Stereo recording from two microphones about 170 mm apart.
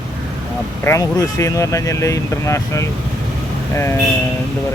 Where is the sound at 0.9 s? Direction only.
20° left (ahead or behind).